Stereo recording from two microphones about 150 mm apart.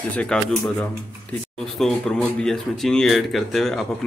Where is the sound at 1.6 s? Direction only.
5° left (ahead or behind).